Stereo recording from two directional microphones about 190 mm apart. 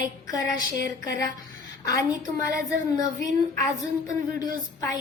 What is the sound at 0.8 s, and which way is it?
Speech, 50° right (ahead or behind).